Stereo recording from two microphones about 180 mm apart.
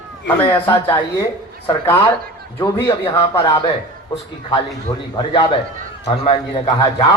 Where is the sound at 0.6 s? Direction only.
25° left (ahead or behind).